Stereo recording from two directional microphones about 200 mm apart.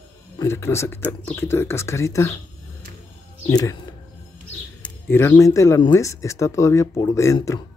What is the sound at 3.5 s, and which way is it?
Speech, 20° left (ahead or behind).